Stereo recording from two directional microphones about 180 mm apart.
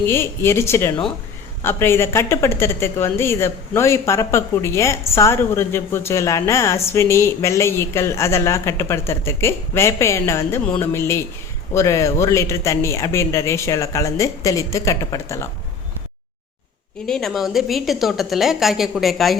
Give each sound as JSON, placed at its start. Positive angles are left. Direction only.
{"t": 0.0, "sound": "a woman's voice", "side_deg": 15}
{"t": 17.1, "sound": "a woman's voice", "side_deg": 0}